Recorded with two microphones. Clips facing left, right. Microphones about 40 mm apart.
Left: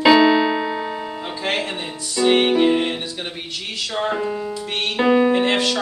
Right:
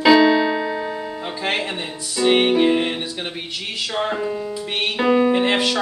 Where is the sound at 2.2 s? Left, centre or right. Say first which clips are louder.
Even; centre.